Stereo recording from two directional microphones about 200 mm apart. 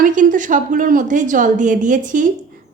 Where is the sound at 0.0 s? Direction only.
40° right (ahead or behind).